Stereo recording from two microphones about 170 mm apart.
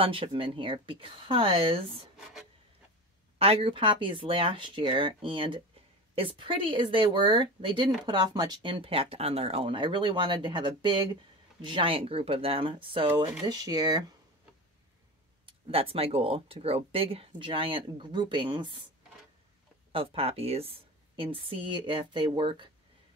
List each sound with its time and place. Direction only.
0.0 s speech: 35° right (ahead or behind)
3.3 s speech: 35° right (ahead or behind)
15.4 s speech: 35° right (ahead or behind)
19.9 s speech: 30° right (ahead or behind)